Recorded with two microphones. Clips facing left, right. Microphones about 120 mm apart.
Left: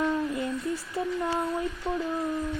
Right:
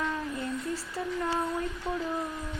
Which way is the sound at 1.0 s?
20° left (ahead or behind).